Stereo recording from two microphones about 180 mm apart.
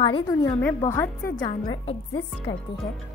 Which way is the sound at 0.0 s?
20° left (ahead or behind).